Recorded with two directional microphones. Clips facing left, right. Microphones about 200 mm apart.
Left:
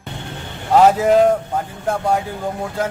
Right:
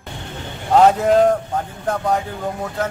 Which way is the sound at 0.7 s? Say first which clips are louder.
Left 1 dB; 5° left (ahead or behind).